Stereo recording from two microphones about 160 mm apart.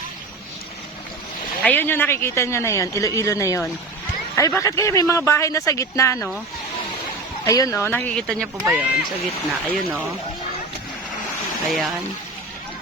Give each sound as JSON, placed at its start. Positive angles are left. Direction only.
{"t": 1.6, "sound": "speech", "side_deg": 10}
{"t": 7.4, "sound": "speech", "side_deg": 20}
{"t": 7.9, "sound": "speech", "side_deg": 10}
{"t": 8.6, "sound": "speech", "side_deg": -10}
{"t": 11.7, "sound": "speech", "side_deg": 0}